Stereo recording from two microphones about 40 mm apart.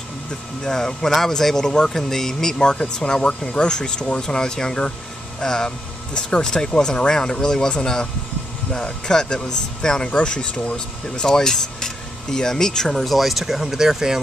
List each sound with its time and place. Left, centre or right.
0.7 s speech: centre
12.9 s speech: centre